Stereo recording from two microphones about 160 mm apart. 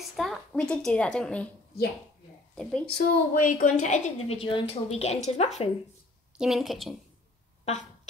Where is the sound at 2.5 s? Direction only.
5° left (ahead or behind).